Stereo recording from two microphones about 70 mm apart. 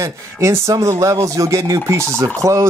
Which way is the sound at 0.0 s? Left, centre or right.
Right.